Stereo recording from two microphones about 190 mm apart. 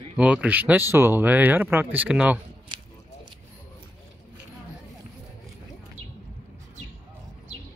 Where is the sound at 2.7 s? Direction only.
25° right (ahead or behind).